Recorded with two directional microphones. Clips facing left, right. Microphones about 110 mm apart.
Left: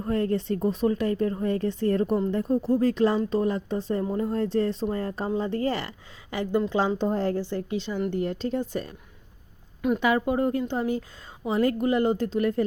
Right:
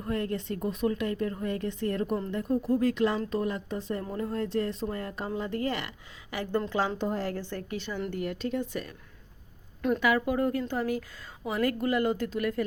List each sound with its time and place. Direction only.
0.0 s speech: 35° left (ahead or behind)
6.3 s speech: 20° left (ahead or behind)
8.1 s speech: 30° left (ahead or behind)
10.0 s speech: 25° left (ahead or behind)